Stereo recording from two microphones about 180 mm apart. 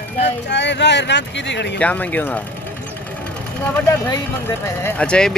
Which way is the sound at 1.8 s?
10° left (ahead or behind).